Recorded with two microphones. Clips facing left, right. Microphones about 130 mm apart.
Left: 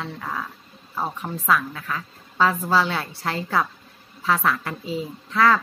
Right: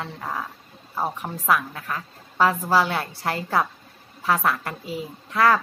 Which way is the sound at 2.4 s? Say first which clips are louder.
Even; 10° right (ahead or behind).